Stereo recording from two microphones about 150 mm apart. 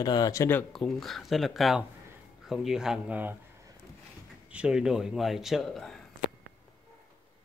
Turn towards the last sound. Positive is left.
turn(degrees=0)  # may be behind; listen again after turning